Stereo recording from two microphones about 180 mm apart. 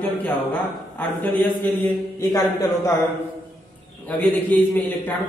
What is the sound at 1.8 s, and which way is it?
Mantra, 20° left (ahead or behind).